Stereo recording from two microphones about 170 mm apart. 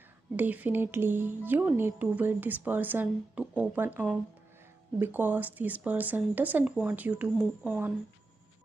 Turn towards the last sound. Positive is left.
turn(degrees=-5)  # may be behind; listen again after turning